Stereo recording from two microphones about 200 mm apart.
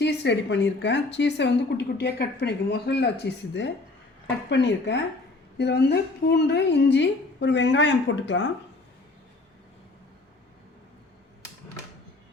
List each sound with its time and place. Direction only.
0.0 s speech: 60° left (ahead or behind)
4.4 s speech: 60° left (ahead or behind)